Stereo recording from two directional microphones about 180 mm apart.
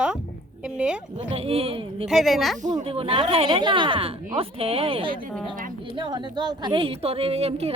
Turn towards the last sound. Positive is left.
turn(degrees=-35)  # may be behind; listen again after turning